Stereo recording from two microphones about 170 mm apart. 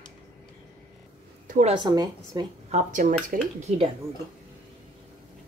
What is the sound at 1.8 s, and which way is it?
Speech, 25° right (ahead or behind).